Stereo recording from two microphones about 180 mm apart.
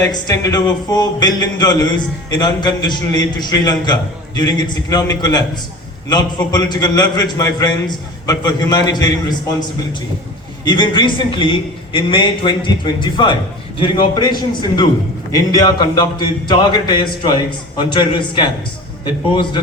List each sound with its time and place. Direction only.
0.0 s a man's voice: 20° left (ahead or behind)
10.6 s a man's voice: 25° left (ahead or behind)